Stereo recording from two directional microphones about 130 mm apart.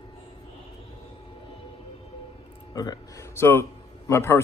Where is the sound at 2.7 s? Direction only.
30° left (ahead or behind).